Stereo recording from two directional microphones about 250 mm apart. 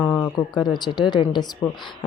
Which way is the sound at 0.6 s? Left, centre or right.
Centre.